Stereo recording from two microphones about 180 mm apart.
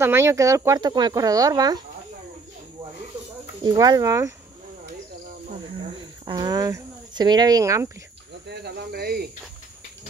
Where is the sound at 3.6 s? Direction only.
20° right (ahead or behind).